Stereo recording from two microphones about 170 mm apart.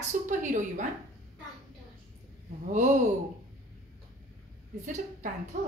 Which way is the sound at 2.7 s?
45° right (ahead or behind).